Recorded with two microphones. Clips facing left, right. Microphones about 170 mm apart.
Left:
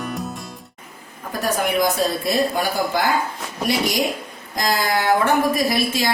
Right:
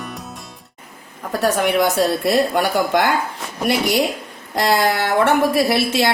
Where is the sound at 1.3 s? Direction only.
75° right (ahead or behind).